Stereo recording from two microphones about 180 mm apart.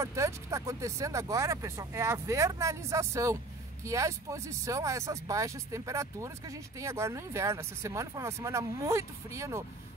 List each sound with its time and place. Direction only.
0.0 s speech: 15° right (ahead or behind)